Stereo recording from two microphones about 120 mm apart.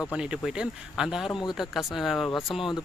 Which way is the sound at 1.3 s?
40° left (ahead or behind).